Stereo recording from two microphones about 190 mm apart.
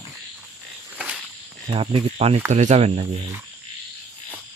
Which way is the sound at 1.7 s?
30° right (ahead or behind).